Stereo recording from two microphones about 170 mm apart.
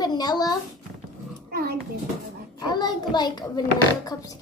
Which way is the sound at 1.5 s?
65° right (ahead or behind).